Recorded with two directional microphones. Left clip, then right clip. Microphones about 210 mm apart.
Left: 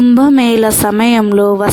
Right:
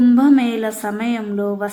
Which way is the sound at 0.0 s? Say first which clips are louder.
Left 5 dB; 40° left (ahead or behind).